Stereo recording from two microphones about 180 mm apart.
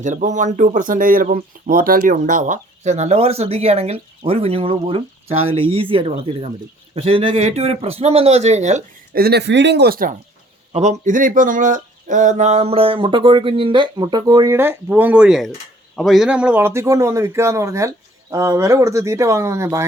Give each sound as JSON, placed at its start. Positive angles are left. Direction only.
{"t": 0.0, "sound": "speech", "side_deg": -45}
{"t": 9.1, "sound": "speech", "side_deg": -60}
{"t": 10.7, "sound": "speech", "side_deg": -35}
{"t": 11.0, "sound": "a man's voice", "side_deg": -45}